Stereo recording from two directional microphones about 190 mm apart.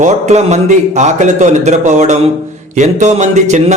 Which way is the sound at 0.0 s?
35° right (ahead or behind).